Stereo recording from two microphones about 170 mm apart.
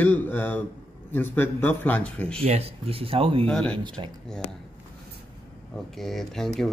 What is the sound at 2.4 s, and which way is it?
Speech, 35° right (ahead or behind).